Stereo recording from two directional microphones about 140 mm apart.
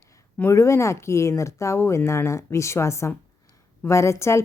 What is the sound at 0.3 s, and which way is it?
Speech, 20° left (ahead or behind).